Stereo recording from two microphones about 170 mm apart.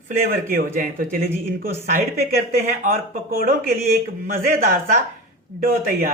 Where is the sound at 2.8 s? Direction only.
55° right (ahead or behind).